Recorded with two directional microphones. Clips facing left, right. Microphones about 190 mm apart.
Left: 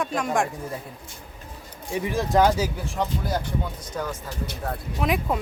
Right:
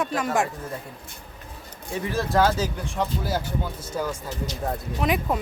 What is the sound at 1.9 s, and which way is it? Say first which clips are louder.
Speech: left 2 dB; 15° left (ahead or behind).